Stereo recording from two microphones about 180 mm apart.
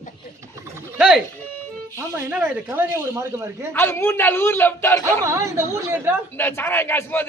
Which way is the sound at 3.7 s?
15° left (ahead or behind).